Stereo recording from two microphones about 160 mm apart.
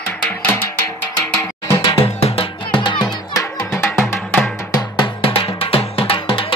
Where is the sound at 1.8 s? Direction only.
35° left (ahead or behind); by 4.8 s 15° left (ahead or behind).